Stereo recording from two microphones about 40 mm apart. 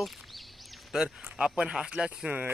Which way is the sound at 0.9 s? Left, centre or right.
Centre.